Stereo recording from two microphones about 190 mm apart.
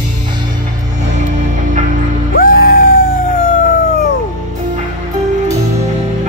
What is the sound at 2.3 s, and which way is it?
Music, 50° left (ahead or behind).